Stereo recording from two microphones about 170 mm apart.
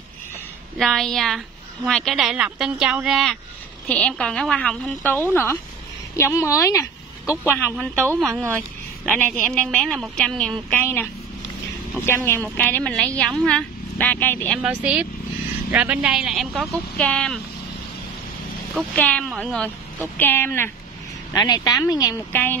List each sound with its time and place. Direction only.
0.7 s a woman's voice: centre (ahead or behind)
7.7 s a woman's voice: 5° left (ahead or behind)
14.6 s speech: 5° right (ahead or behind)
18.8 s a woman's voice: 5° left (ahead or behind)